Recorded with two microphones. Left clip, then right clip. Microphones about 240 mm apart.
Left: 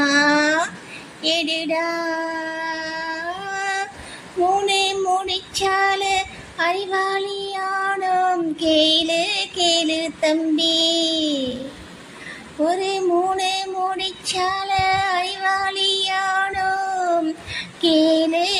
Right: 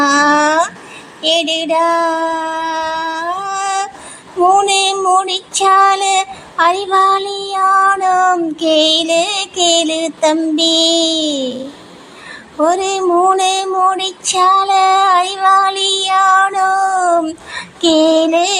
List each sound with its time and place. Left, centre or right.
0.0 s a sound: centre
1.2 s child singing: centre
12.6 s child singing: centre
17.6 s female singing: centre